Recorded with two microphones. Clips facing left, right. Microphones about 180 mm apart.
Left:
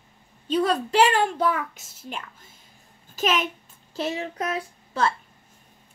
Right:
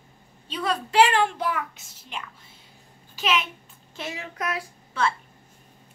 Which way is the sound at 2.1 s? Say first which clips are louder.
Even; 45° left (ahead or behind).